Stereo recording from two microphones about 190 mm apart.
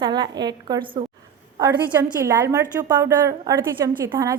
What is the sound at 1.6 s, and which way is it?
A woman's voice, 15° right (ahead or behind).